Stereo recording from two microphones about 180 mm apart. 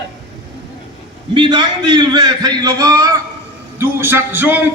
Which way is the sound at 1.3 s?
25° right (ahead or behind).